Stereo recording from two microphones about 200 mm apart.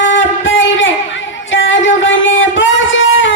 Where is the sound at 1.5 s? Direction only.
75° left (ahead or behind).